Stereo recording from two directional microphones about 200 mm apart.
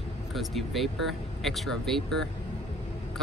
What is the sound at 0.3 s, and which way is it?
Speech, centre (ahead or behind).